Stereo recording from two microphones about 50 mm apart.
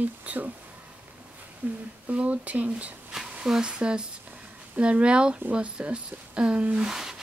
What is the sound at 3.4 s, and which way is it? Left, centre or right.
Speech, centre.